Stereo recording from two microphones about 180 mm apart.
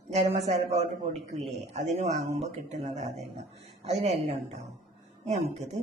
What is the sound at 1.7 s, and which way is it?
Speech, 40° right (ahead or behind).